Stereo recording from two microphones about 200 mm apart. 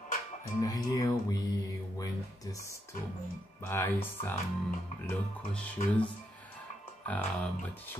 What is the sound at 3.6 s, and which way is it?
Speech, 10° left (ahead or behind).